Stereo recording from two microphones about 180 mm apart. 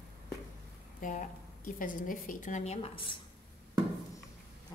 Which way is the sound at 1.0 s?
45° left (ahead or behind).